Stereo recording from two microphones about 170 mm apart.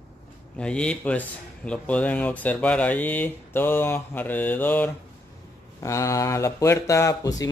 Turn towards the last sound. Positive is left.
turn(degrees=20)  # may be behind; listen again after turning